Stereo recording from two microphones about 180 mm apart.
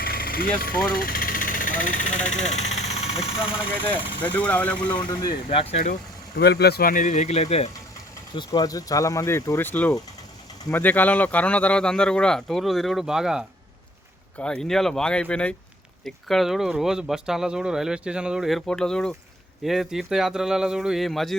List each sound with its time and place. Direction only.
0.0 s vehicle: 55° left (ahead or behind); by 3.2 s 35° left (ahead or behind)
4.2 s speech: 10° left (ahead or behind)
4.9 s speech: 25° left (ahead or behind)
5.8 s speech: 55° left (ahead or behind); by 7.7 s 35° left (ahead or behind)
8.4 s speech: 20° left (ahead or behind); by 21.3 s centre (ahead or behind)